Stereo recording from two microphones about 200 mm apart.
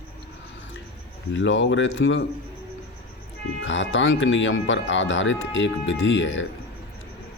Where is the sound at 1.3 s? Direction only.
65° left (ahead or behind).